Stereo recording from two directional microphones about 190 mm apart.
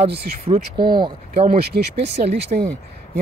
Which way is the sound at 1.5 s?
60° right (ahead or behind).